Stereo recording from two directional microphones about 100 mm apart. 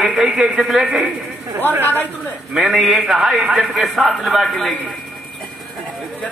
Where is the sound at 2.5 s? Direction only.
Centre (ahead or behind).